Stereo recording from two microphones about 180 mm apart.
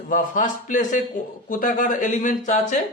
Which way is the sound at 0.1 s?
45° left (ahead or behind).